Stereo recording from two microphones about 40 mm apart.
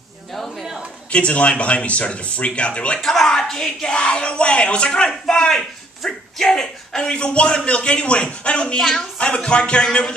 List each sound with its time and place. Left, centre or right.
0.3 s a sound: centre
1.1 s speech: left
3.0 s speech: centre; by 5.1 s left
5.2 s speech: centre
8.7 s a woman's voice: centre
9.2 s speech: left